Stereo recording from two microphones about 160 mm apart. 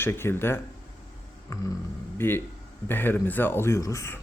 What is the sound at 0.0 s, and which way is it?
A man's voice, 15° left (ahead or behind).